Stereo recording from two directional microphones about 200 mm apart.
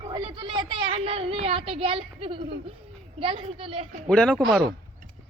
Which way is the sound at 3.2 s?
25° right (ahead or behind).